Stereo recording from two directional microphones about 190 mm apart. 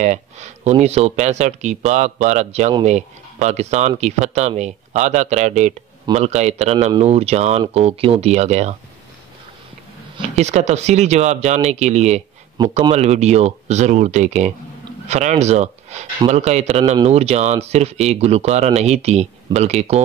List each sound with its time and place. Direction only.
0.0 s speech: 35° right (ahead or behind)
10.1 s speech: 35° right (ahead or behind)
12.6 s a man's voice: 20° right (ahead or behind)
12.9 s speech: 35° right (ahead or behind)